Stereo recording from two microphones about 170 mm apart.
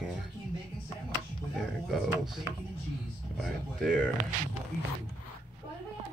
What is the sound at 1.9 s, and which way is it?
Speech, centre (ahead or behind).